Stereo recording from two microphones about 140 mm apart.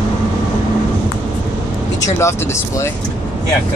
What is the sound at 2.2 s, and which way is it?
Speech, 20° left (ahead or behind).